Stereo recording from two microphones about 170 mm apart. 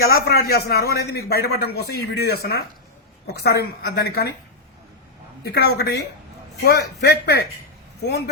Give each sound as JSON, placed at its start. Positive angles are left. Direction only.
{"t": 0.0, "sound": "a man's voice", "side_deg": 65}
{"t": 5.5, "sound": "a man's voice", "side_deg": 70}